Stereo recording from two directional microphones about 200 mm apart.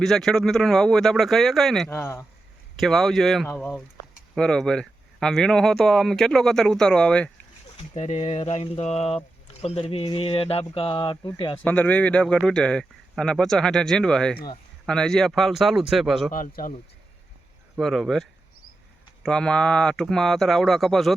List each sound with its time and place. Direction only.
0.0 s speech: centre (ahead or behind)
1.9 s speech: 15° left (ahead or behind)
2.7 s speech: centre (ahead or behind)
7.9 s speech: 35° left (ahead or behind)
11.6 s speech: 10° left (ahead or behind)
16.3 s speech: 45° left (ahead or behind)
17.7 s speech: centre (ahead or behind)